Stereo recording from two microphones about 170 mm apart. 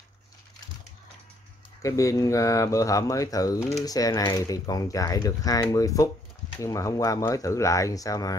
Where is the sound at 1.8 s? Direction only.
20° left (ahead or behind).